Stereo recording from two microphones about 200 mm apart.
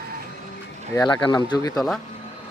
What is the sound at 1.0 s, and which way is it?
Speech, 20° left (ahead or behind).